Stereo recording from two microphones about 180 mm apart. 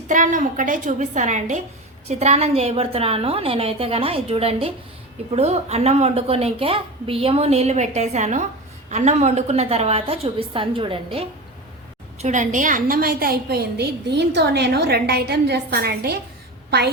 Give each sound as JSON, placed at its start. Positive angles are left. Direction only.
{"t": 0.1, "sound": "a woman's voice", "side_deg": -45}
{"t": 12.2, "sound": "a woman's voice", "side_deg": -45}